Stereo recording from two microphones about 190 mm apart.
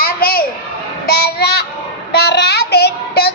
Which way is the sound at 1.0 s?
55° left (ahead or behind).